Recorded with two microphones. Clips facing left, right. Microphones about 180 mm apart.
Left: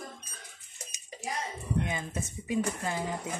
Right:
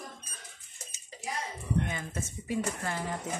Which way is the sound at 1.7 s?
15° left (ahead or behind).